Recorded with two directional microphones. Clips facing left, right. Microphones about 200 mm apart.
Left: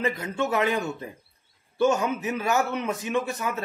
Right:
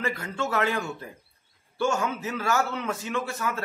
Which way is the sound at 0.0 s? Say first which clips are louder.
Left 3 dB; 20° left (ahead or behind).